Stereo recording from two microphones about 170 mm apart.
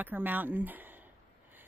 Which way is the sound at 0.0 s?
10° right (ahead or behind).